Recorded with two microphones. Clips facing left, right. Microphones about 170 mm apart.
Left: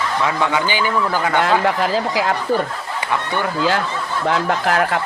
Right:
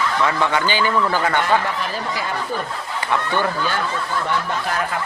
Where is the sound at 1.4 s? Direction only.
90° left.